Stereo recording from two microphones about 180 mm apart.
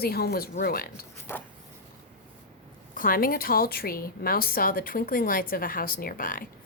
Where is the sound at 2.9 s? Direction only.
50° left (ahead or behind).